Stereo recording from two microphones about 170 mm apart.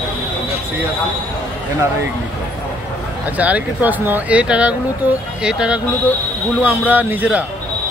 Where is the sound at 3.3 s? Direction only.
10° right (ahead or behind).